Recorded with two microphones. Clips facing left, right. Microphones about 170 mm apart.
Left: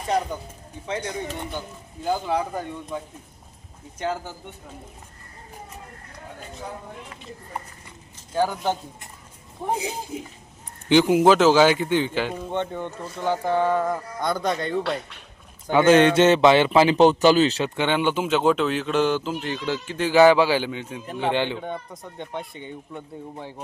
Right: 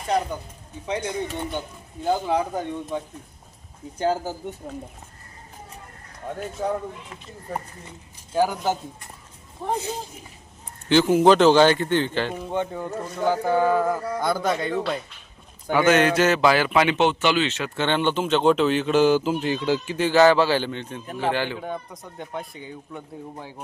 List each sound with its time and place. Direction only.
0.9 s a man's voice: 15° right (ahead or behind)
2.2 s speech: 20° right (ahead or behind)
3.9 s speech: 35° right (ahead or behind)
6.6 s speech: 55° right (ahead or behind)
8.3 s a man's voice: 10° right (ahead or behind)
9.6 s speech: 10° left (ahead or behind)
10.1 s speech: 90° left
10.8 s speech: 15° left (ahead or behind)
12.3 s speech: 10° right (ahead or behind)
15.6 s a man's voice: 25° left (ahead or behind)
17.7 s a man's voice: 10° left (ahead or behind); by 20.1 s 10° right (ahead or behind)
20.1 s speech: 15° left (ahead or behind)
21.2 s a man's voice: 20° left (ahead or behind)
21.6 s speech: centre (ahead or behind)